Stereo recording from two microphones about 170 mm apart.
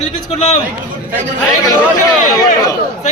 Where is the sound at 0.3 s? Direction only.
35° left (ahead or behind).